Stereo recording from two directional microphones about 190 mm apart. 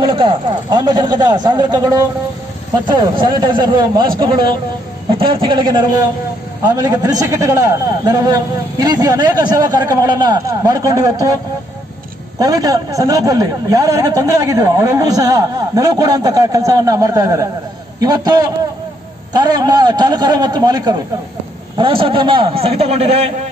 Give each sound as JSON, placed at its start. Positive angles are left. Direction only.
{"t": 0.0, "sound": "a man's voice", "side_deg": -25}
{"t": 12.4, "sound": "a man's voice", "side_deg": -20}